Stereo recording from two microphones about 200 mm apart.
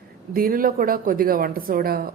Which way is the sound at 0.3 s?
45° right (ahead or behind).